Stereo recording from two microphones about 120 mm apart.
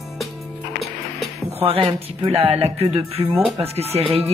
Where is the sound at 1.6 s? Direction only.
45° right (ahead or behind).